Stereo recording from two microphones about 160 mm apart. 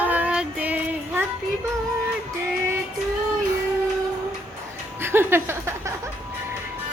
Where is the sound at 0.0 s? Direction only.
10° right (ahead or behind).